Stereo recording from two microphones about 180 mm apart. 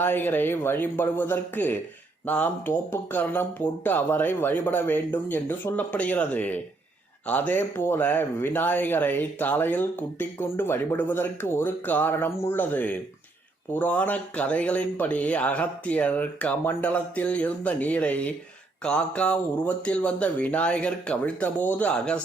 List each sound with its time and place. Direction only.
0.0 s speech: 10° left (ahead or behind)